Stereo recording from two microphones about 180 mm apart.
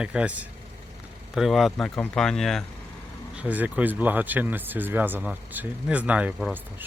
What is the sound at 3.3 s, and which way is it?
Speech, 10° right (ahead or behind).